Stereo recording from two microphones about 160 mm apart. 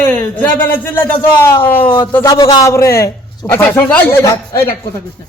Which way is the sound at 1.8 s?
30° left (ahead or behind).